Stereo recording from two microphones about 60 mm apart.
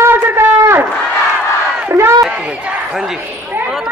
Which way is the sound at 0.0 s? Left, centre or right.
Right.